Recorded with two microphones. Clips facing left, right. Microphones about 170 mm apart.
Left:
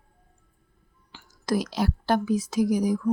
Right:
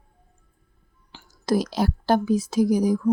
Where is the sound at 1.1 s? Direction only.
30° right (ahead or behind).